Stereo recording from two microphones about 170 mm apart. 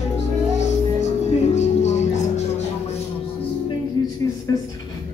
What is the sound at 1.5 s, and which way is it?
Music, 40° left (ahead or behind).